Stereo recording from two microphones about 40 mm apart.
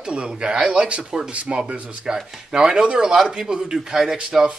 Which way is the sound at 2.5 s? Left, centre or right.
Centre.